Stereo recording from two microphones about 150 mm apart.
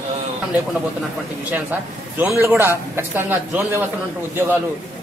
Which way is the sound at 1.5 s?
10° right (ahead or behind).